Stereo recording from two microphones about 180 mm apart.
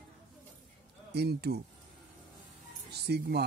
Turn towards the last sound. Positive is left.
turn(degrees=-65)  # may be behind; listen again after turning